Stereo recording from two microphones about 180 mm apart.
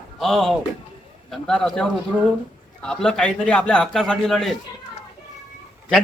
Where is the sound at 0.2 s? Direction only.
Centre (ahead or behind).